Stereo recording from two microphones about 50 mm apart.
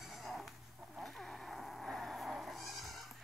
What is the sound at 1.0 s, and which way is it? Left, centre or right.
Bleat, centre.